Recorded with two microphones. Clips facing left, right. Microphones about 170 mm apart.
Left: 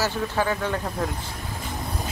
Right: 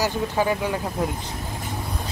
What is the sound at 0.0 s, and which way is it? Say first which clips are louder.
Speech: right 2 dB; 15° right (ahead or behind).